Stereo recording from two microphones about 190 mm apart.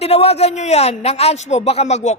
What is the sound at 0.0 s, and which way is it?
A man's voice, 35° left (ahead or behind).